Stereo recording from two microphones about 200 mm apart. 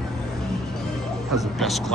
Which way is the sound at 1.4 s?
Centre (ahead or behind).